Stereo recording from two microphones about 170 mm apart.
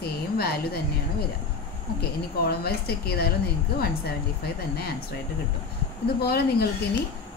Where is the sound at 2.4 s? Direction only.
65° left (ahead or behind).